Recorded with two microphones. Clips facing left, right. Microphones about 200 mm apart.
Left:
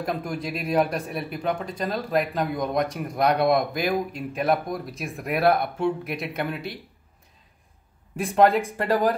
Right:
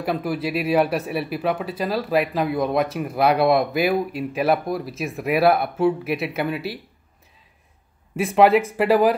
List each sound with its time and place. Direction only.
0.0 s speech: 5° right (ahead or behind)
8.8 s speech: 10° right (ahead or behind)